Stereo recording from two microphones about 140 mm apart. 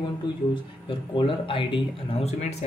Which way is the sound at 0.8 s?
40° left (ahead or behind).